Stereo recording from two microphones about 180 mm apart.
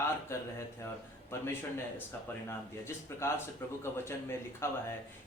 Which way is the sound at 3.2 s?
15° left (ahead or behind).